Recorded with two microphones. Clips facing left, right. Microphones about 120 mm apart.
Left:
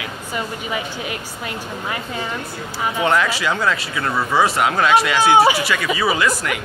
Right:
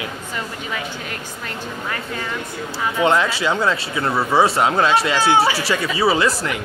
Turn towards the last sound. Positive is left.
turn(degrees=-30)  # may be behind; listen again after turning